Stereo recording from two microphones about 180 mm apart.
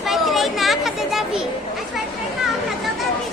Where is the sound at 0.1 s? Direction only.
Centre (ahead or behind).